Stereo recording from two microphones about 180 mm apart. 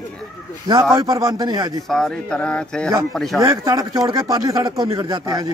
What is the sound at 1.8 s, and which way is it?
Speech, 5° left (ahead or behind).